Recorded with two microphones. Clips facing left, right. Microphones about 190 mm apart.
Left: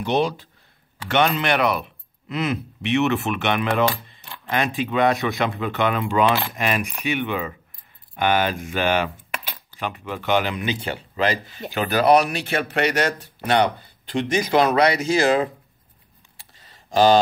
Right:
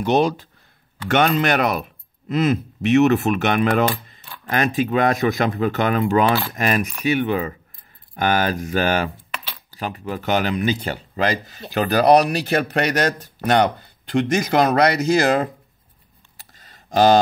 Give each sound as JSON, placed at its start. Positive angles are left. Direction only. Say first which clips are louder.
{"t": 0.0, "sound": "speech", "louder": "right 4 dB", "side_deg": -45}